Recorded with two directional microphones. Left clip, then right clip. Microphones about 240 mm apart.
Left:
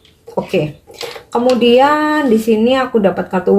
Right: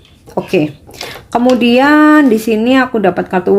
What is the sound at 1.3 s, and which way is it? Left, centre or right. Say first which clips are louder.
Speech: even; right.